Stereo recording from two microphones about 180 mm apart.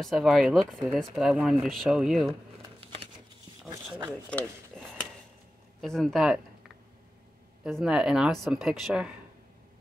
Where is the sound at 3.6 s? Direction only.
15° right (ahead or behind).